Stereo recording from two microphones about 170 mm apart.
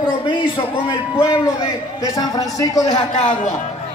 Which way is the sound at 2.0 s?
20° left (ahead or behind).